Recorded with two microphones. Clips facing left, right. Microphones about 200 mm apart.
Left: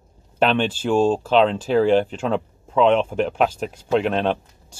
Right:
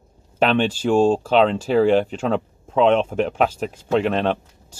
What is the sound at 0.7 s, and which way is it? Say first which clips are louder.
Speech: right 2 dB; 10° right (ahead or behind).